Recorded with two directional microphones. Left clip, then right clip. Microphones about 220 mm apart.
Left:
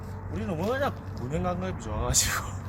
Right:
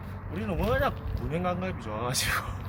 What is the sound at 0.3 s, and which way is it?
Speech, 5° left (ahead or behind).